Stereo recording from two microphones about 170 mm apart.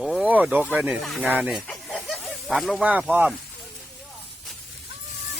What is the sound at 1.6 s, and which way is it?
Snake, 5° left (ahead or behind).